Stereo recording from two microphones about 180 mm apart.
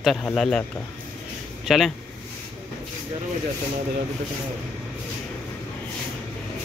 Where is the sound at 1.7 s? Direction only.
Centre (ahead or behind).